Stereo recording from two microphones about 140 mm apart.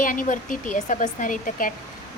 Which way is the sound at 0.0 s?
70° left (ahead or behind).